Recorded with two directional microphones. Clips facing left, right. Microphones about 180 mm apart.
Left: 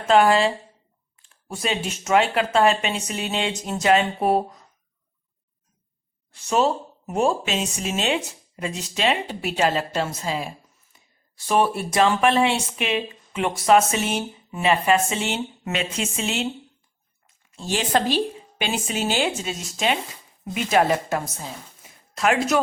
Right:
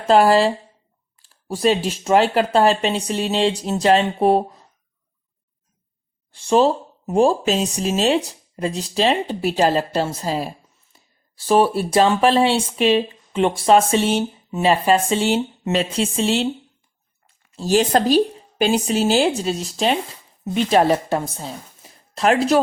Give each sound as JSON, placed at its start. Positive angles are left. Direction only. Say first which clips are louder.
{"t": 0.1, "sound": "speech", "louder": "right 3 dB", "side_deg": -35}
{"t": 6.3, "sound": "a woman's voice", "louder": "right 5 dB", "side_deg": -30}